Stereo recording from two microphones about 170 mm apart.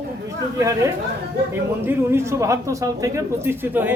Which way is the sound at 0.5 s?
15° right (ahead or behind).